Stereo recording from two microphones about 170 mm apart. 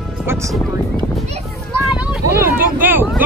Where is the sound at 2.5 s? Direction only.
10° right (ahead or behind).